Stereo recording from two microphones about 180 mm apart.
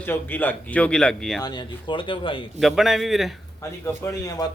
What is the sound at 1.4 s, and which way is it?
Speech, 25° left (ahead or behind).